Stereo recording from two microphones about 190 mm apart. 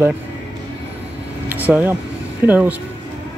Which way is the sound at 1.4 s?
10° right (ahead or behind).